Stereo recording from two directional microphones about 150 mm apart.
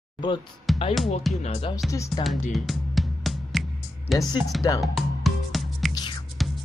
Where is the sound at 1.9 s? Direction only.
20° left (ahead or behind).